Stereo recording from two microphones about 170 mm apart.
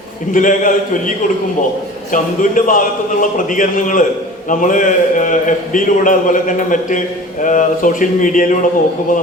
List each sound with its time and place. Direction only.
0.3 s a man's voice: 50° left (ahead or behind)
2.1 s a man's voice: 50° left (ahead or behind)